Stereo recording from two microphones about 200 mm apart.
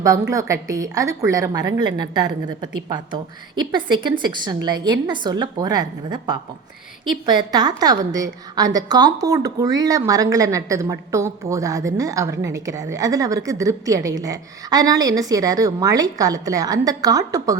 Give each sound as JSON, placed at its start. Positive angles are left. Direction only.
{"t": 0.0, "sound": "a woman's voice", "side_deg": -15}